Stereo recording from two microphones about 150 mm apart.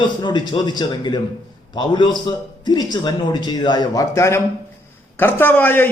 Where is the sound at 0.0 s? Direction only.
30° left (ahead or behind).